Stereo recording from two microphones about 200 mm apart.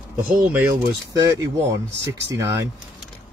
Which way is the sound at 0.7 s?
15° right (ahead or behind).